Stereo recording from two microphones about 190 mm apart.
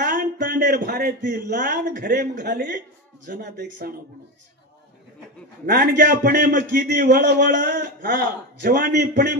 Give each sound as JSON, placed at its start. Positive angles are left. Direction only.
{"t": 0.0, "sound": "a sound", "side_deg": -45}
{"t": 0.5, "sound": "a man's voice", "side_deg": -60}
{"t": 5.7, "sound": "a man's voice", "side_deg": -50}